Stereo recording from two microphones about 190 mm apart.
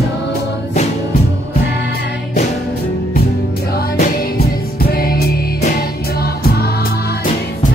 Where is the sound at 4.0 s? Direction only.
50° left (ahead or behind).